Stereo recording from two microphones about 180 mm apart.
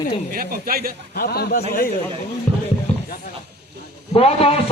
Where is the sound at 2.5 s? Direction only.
40° left (ahead or behind).